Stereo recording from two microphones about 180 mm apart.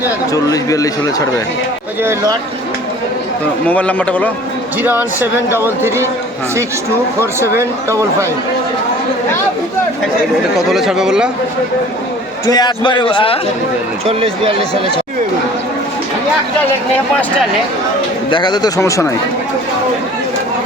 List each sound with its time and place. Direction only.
0.0 s speech: 20° left (ahead or behind)
3.7 s speech: 10° left (ahead or behind)
4.8 s speech: 10° right (ahead or behind)
7.2 s speech: 15° right (ahead or behind)
10.7 s speech: centre (ahead or behind)
12.5 s speech: 25° left (ahead or behind)
14.1 s speech: 30° right (ahead or behind)
18.3 s speech: 25° left (ahead or behind)